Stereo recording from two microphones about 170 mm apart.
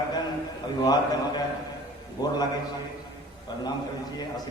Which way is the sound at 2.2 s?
25° left (ahead or behind).